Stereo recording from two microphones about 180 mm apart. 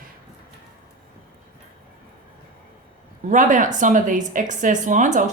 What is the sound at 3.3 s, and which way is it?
A woman's voice, 45° right (ahead or behind).